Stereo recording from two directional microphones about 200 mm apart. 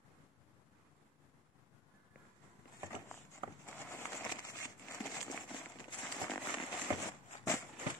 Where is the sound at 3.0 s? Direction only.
10° left (ahead or behind).